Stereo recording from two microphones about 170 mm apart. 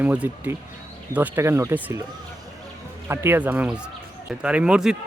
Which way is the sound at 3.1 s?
15° right (ahead or behind).